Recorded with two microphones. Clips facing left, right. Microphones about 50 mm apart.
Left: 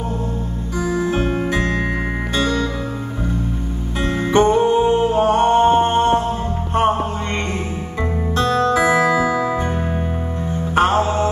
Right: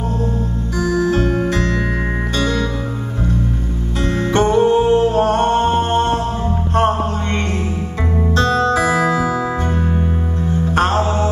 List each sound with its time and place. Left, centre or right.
0.7 s music: centre
4.0 s music: centre
8.4 s music: centre
9.0 s music: centre
10.7 s mantra: centre